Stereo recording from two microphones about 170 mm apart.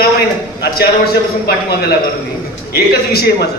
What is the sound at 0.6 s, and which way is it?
Speech, 65° left (ahead or behind).